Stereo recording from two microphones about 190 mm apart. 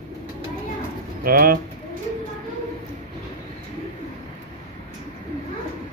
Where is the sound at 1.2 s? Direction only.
50° right (ahead or behind).